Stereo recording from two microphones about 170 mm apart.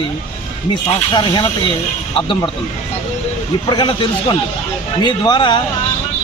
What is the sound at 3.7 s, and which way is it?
Speech, 25° left (ahead or behind).